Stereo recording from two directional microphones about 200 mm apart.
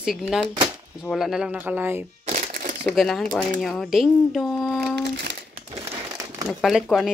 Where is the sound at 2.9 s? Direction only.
Centre (ahead or behind).